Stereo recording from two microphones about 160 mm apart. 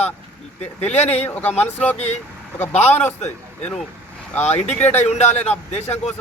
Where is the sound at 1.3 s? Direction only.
10° left (ahead or behind).